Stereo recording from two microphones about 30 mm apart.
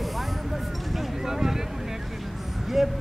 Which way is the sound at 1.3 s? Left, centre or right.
Centre.